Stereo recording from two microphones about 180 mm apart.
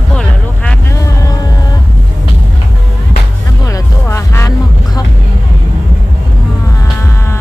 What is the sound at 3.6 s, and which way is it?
Music, 15° left (ahead or behind).